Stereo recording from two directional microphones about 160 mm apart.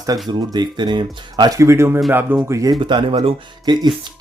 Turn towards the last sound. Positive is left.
turn(degrees=-25)  # may be behind; listen again after turning